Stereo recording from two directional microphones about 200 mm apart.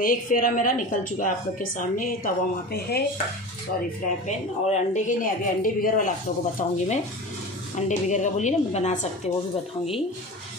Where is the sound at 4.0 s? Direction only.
35° left (ahead or behind).